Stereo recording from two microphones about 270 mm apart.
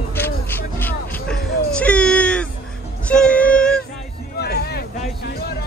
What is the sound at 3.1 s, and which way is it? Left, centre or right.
Music, centre.